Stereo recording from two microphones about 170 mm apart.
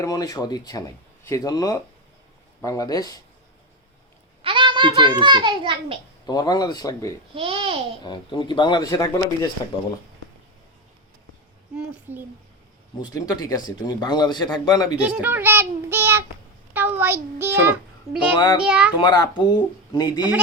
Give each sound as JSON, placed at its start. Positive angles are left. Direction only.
{"t": 0.0, "sound": "speech", "side_deg": 20}
{"t": 4.4, "sound": "a child's voice", "side_deg": -30}
{"t": 6.2, "sound": "speech", "side_deg": 25}
{"t": 7.3, "sound": "speech", "side_deg": -35}
{"t": 8.0, "sound": "speech", "side_deg": 25}
{"t": 12.1, "sound": "a child's voice", "side_deg": -10}
{"t": 13.0, "sound": "speech", "side_deg": 25}
{"t": 15.0, "sound": "a child's voice", "side_deg": -10}
{"t": 18.1, "sound": "a child's voice", "side_deg": 0}
{"t": 18.9, "sound": "speech", "side_deg": 25}